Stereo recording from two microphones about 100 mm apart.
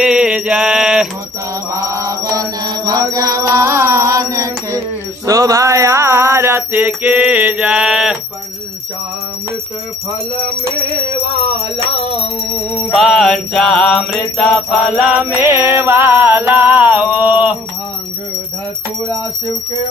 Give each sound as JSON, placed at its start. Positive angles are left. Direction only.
{"t": 0.0, "sound": "mantra", "side_deg": -10}
{"t": 1.7, "sound": "mantra", "side_deg": -30}
{"t": 12.9, "sound": "music", "side_deg": -5}
{"t": 15.1, "sound": "music", "side_deg": -20}